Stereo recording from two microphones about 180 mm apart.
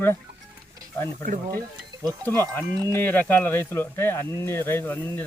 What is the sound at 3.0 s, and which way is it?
Speech, 10° left (ahead or behind).